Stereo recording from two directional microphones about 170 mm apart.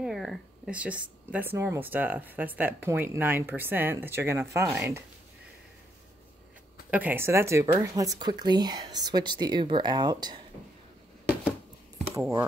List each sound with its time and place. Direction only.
0.0 s speech: centre (ahead or behind); by 5.0 s 15° right (ahead or behind)
6.9 s speech: 10° right (ahead or behind); by 10.4 s 25° right (ahead or behind)
12.2 s speech: 15° right (ahead or behind)